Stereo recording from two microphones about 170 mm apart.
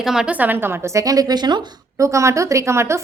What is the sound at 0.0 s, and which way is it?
A woman's voice, 5° right (ahead or behind).